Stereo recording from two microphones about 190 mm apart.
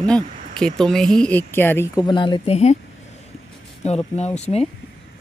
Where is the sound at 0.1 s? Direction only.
5° left (ahead or behind).